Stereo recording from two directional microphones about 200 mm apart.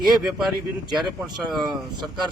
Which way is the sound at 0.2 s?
Centre (ahead or behind).